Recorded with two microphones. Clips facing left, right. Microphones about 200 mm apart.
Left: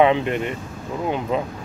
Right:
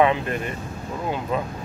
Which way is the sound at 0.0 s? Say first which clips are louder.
Left 3 dB; 25° left (ahead or behind).